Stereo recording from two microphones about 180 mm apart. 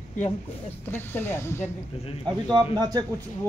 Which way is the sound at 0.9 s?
15° left (ahead or behind).